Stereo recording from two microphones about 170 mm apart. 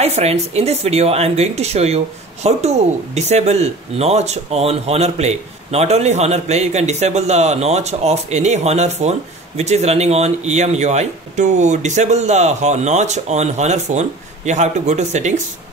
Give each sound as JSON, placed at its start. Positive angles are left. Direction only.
{"t": 0.0, "sound": "speech", "side_deg": -40}